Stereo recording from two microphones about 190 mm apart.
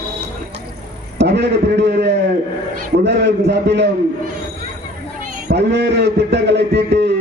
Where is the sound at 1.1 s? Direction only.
65° right (ahead or behind).